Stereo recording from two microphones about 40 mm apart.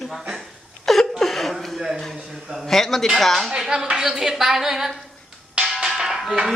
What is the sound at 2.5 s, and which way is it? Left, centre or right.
Speech, centre.